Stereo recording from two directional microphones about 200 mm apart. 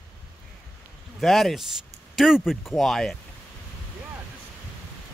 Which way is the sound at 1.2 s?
Centre (ahead or behind).